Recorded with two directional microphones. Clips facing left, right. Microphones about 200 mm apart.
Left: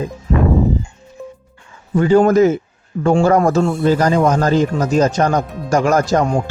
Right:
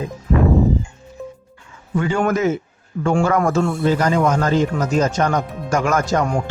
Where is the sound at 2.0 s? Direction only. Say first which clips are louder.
Left 8 dB; 35° left (ahead or behind).